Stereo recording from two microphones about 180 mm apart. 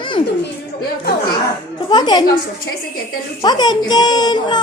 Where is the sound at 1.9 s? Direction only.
25° left (ahead or behind).